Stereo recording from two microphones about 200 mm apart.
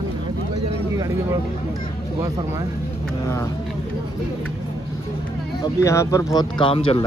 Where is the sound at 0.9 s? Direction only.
15° right (ahead or behind).